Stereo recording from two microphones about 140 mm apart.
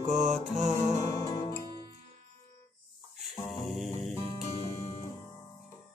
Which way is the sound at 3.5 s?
Centre (ahead or behind).